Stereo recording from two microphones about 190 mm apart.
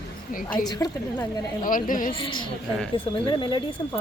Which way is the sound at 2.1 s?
25° left (ahead or behind).